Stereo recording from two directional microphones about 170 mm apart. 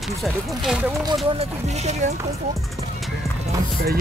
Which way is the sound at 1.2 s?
40° right (ahead or behind).